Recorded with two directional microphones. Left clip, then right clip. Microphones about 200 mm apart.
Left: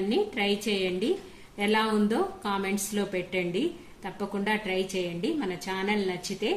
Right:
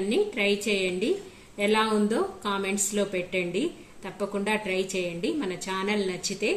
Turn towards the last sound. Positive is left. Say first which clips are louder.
# right 2 dB
turn(degrees=5)  # may be behind; listen again after turning